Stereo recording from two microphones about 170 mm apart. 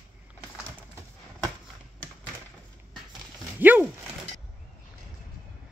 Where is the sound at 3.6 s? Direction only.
10° right (ahead or behind).